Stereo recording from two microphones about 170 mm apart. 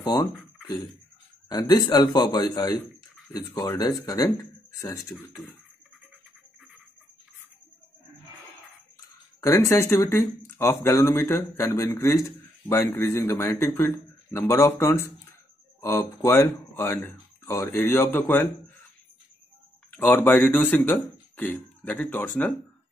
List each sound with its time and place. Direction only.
0.0 s speech: 25° left (ahead or behind)
1.5 s a man's voice: 20° left (ahead or behind)
5.1 s speech: centre (ahead or behind)
9.4 s speech: 15° left (ahead or behind)
19.9 s a sound: 10° left (ahead or behind)
20.2 s speech: 10° left (ahead or behind)